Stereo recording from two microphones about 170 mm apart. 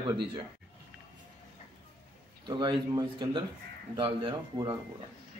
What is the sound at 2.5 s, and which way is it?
A man's voice, 25° right (ahead or behind).